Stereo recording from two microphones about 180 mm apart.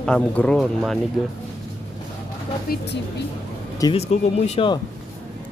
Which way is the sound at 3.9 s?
35° left (ahead or behind).